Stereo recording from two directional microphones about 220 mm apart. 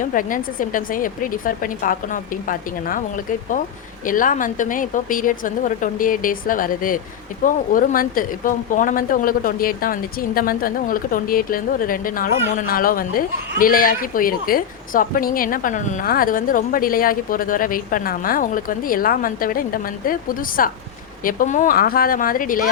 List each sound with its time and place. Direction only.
0.0 s speech: 40° left (ahead or behind)
4.0 s speech: 40° left (ahead or behind)